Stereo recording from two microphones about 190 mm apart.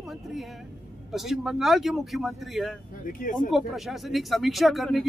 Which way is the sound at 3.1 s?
45° left (ahead or behind).